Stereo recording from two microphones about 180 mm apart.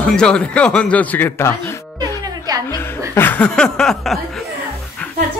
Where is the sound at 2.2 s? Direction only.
20° right (ahead or behind).